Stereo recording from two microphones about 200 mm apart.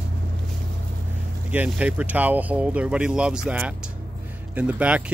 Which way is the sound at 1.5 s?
5° right (ahead or behind).